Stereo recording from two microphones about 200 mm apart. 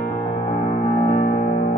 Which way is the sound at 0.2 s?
25° left (ahead or behind).